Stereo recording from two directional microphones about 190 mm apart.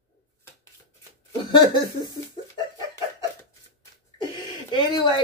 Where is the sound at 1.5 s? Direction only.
25° left (ahead or behind).